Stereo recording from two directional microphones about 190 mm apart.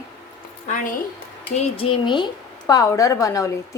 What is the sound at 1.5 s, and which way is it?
A woman's voice, 35° left (ahead or behind).